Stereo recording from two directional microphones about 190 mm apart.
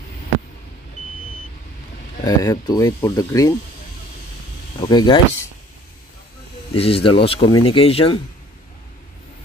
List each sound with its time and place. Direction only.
2.2 s speech: 20° left (ahead or behind)
4.7 s speech: 20° left (ahead or behind)
6.7 s speech: 30° left (ahead or behind)